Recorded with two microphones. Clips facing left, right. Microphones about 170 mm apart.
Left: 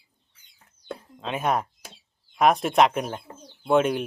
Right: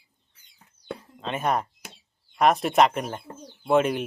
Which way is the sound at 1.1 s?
Centre (ahead or behind).